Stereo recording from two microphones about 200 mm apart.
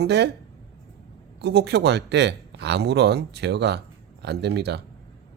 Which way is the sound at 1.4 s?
55° right (ahead or behind).